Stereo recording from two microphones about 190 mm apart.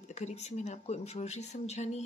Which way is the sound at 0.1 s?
35° left (ahead or behind).